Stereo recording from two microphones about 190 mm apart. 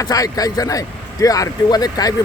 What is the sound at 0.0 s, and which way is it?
Speech, 20° left (ahead or behind).